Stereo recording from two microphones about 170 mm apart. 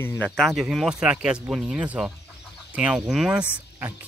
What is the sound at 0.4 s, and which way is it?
Speech, centre (ahead or behind).